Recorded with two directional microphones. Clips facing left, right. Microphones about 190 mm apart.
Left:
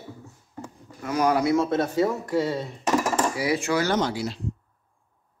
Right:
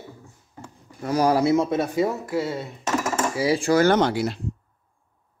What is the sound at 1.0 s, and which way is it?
Speech, 35° right (ahead or behind).